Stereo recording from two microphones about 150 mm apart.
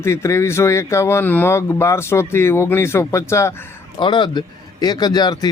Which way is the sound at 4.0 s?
30° left (ahead or behind).